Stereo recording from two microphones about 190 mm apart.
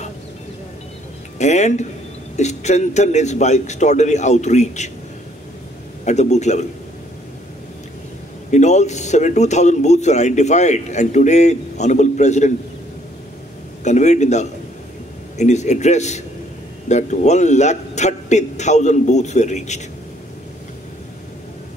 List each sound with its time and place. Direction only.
1.4 s a man's voice: 35° left (ahead or behind)
6.0 s a man's voice: 35° left (ahead or behind)
8.5 s a man's voice: 40° left (ahead or behind)
13.8 s a man's voice: 40° left (ahead or behind)